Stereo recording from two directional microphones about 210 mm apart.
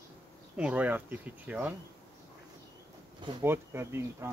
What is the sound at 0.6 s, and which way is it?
Speech, 5° right (ahead or behind).